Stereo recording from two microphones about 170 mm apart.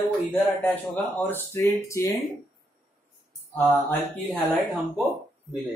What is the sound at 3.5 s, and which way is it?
Speech, 10° left (ahead or behind).